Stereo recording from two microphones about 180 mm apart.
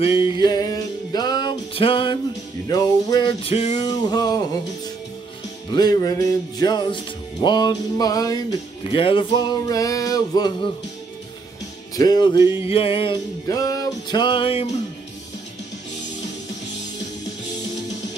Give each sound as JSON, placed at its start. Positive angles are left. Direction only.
{"t": 0.2, "sound": "music", "side_deg": 25}
{"t": 2.7, "sound": "speech", "side_deg": 25}
{"t": 3.8, "sound": "speech", "side_deg": 20}
{"t": 5.7, "sound": "speech", "side_deg": 20}
{"t": 11.9, "sound": "speech", "side_deg": 20}
{"t": 12.6, "sound": "a sound", "side_deg": 30}
{"t": 13.5, "sound": "speech", "side_deg": 20}